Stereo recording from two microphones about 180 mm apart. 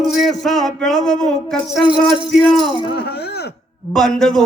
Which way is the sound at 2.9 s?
60° left (ahead or behind).